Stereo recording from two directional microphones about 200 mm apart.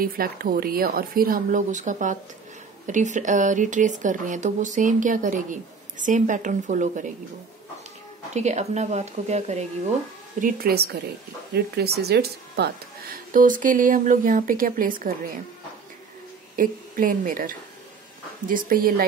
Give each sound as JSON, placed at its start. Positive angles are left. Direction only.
{"t": 0.0, "sound": "speech", "side_deg": -45}
{"t": 8.4, "sound": "speech", "side_deg": -35}
{"t": 10.4, "sound": "speech", "side_deg": -50}
{"t": 16.5, "sound": "speech", "side_deg": -45}